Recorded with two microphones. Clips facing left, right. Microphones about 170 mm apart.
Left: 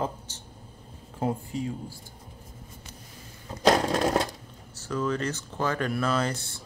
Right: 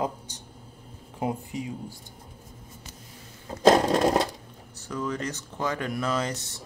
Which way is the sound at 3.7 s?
20° right (ahead or behind).